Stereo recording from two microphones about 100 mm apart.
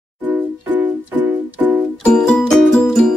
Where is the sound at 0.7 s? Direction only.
15° right (ahead or behind).